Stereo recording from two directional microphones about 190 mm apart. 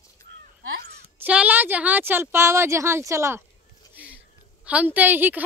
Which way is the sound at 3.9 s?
10° right (ahead or behind).